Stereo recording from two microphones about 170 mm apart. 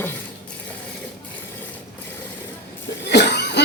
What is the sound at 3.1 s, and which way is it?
Cough, 80° left.